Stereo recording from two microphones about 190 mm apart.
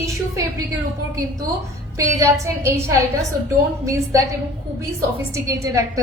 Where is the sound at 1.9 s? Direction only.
15° right (ahead or behind).